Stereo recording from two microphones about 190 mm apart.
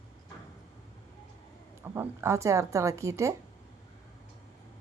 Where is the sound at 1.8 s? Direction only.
10° right (ahead or behind).